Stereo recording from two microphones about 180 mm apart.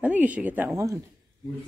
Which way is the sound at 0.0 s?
10° right (ahead or behind).